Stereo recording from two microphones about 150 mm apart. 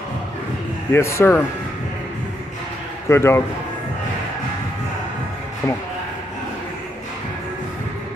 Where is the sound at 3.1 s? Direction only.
15° left (ahead or behind).